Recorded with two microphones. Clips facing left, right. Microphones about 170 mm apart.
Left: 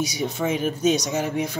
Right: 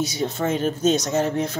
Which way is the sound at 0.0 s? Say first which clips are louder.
Right 1 dB; 10° left (ahead or behind).